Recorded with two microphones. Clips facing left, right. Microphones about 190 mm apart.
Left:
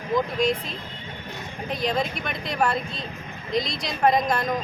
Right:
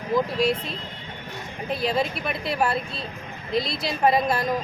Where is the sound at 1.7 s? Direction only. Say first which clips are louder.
Right 1 dB; 5° right (ahead or behind).